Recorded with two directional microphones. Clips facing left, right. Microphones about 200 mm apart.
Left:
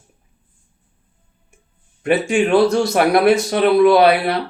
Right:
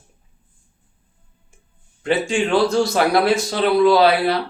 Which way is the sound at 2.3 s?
25° left (ahead or behind).